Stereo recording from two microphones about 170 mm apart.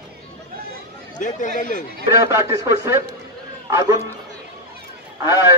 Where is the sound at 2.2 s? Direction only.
15° right (ahead or behind).